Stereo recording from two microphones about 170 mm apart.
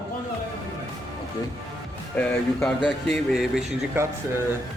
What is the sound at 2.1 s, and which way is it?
Speech, 5° left (ahead or behind).